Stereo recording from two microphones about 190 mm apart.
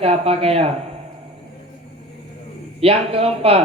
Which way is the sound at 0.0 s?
30° right (ahead or behind).